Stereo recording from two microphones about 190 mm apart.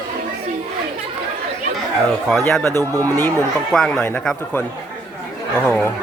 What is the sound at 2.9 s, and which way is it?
Speech, 10° left (ahead or behind).